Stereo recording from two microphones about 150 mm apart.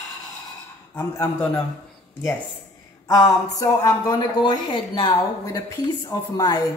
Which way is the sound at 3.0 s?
20° left (ahead or behind).